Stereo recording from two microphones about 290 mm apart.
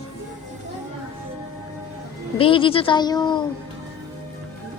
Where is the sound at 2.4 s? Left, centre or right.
Centre.